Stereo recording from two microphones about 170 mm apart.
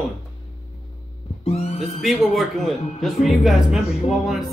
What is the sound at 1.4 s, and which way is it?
Music, 35° left (ahead or behind).